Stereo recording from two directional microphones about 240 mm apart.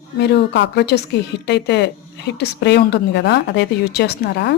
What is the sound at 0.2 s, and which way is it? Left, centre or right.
A woman's voice, left.